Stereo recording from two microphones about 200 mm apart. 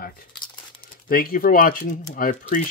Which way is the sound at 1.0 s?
45° left (ahead or behind).